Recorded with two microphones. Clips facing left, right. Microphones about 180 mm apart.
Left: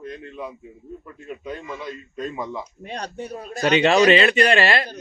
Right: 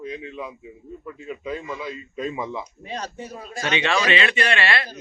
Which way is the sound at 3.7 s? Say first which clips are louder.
Left 7 dB; 40° left (ahead or behind).